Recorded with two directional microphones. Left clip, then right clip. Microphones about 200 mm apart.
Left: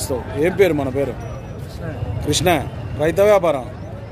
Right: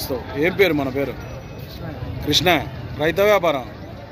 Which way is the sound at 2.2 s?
5° left (ahead or behind).